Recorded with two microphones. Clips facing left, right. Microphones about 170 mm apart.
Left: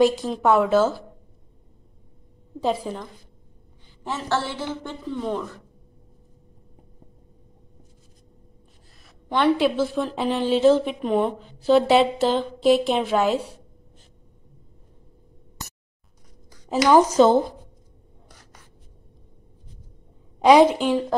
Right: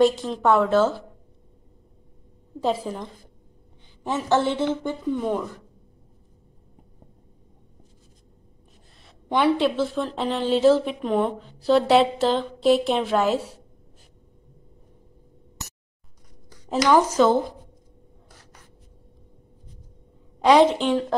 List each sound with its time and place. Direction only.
0.0 s speech: 5° left (ahead or behind)
2.6 s speech: centre (ahead or behind)
4.0 s a woman's voice: 15° right (ahead or behind)
9.6 s speech: 5° left (ahead or behind)
16.6 s a woman's voice: 5° left (ahead or behind)
16.9 s speech: 25° left (ahead or behind)
20.3 s a woman's voice: 10° left (ahead or behind)